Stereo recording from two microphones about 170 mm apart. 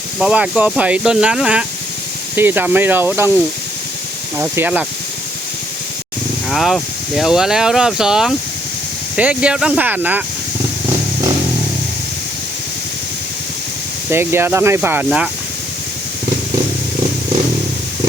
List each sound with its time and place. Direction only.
0.2 s speech: 5° right (ahead or behind)
4.4 s speech: 10° right (ahead or behind)
6.5 s speech: centre (ahead or behind)
14.1 s speech: 15° right (ahead or behind)